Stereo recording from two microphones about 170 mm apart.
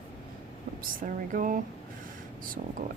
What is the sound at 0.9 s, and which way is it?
Speech, 50° right (ahead or behind).